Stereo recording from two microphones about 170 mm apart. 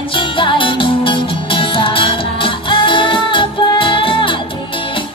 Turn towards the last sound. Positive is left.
turn(degrees=30)  # may be behind; listen again after turning